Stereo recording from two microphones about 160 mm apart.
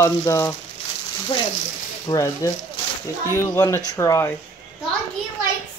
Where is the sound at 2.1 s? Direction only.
35° left (ahead or behind).